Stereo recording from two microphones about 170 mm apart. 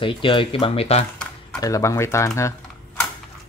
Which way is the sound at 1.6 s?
20° left (ahead or behind).